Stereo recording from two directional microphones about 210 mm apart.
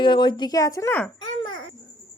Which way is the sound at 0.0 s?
20° left (ahead or behind).